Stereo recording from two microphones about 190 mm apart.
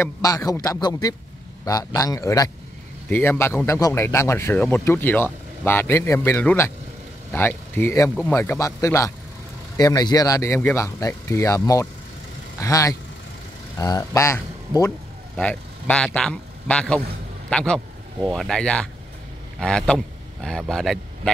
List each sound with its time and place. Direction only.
0.0 s speech: 15° left (ahead or behind)
15.3 s speech: 5° left (ahead or behind)